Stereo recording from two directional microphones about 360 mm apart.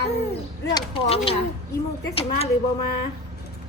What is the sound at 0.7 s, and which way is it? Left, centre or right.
A woman's voice, centre.